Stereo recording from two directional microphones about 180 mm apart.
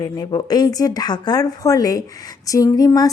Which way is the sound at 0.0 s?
20° left (ahead or behind).